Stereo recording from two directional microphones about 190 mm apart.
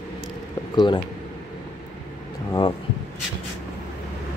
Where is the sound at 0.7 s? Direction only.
25° left (ahead or behind).